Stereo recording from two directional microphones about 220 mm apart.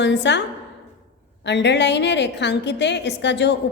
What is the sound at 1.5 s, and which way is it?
Speech, 50° left (ahead or behind).